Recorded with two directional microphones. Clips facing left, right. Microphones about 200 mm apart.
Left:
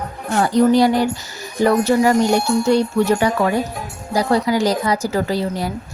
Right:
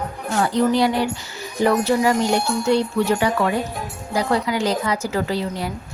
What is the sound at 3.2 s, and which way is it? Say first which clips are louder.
A woman's voice: left 2 dB; 40° left (ahead or behind).